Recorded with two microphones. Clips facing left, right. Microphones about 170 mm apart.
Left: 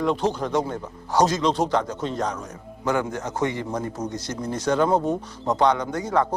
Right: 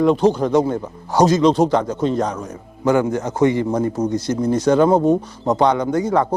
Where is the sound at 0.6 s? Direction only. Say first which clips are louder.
Right 8 dB; 30° right (ahead or behind).